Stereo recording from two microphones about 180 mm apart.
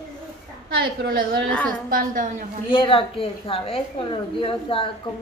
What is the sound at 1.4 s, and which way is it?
Speech, 5° left (ahead or behind).